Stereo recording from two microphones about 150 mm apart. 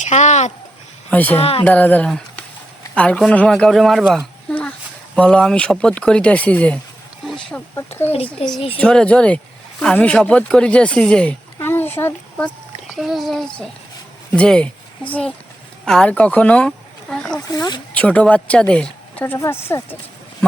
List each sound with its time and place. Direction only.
0.0 s a sound: 50° left (ahead or behind)
1.1 s a woman's voice: 10° left (ahead or behind)
1.4 s a child's voice: 40° left (ahead or behind)
1.6 s a woman's voice: 10° left (ahead or behind)
8.1 s a child's voice: 40° left (ahead or behind)
8.8 s a woman's voice: 5° left (ahead or behind)
12.9 s a woman's voice: centre (ahead or behind); by 20.0 s 15° left (ahead or behind)